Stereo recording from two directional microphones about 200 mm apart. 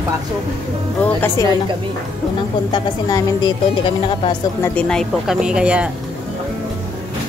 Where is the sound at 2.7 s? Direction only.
20° left (ahead or behind).